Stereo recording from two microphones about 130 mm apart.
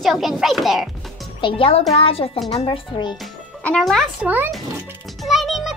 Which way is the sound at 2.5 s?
35° left (ahead or behind).